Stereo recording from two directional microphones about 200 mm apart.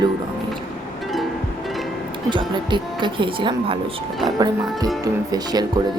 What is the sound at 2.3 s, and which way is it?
Speech, 25° right (ahead or behind).